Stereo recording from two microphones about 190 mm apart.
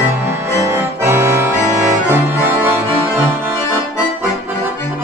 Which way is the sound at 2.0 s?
10° right (ahead or behind).